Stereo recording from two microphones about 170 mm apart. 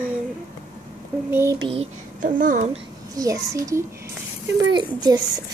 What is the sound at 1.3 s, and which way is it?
Speech, 15° right (ahead or behind).